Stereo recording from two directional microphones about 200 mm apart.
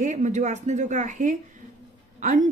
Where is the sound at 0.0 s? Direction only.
35° right (ahead or behind).